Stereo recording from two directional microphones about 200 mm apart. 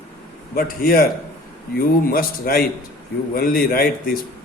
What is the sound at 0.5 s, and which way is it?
Speech, 45° left (ahead or behind).